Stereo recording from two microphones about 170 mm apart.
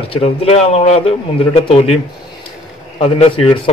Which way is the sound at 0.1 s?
35° left (ahead or behind).